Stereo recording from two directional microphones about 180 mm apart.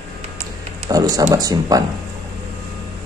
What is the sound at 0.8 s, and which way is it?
Speech, 20° right (ahead or behind).